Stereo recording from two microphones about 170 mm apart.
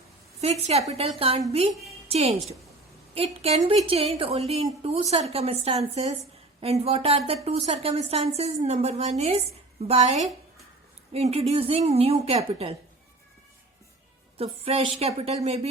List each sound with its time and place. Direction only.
0.4 s a woman's voice: 40° right (ahead or behind)
14.3 s a woman's voice: 35° right (ahead or behind)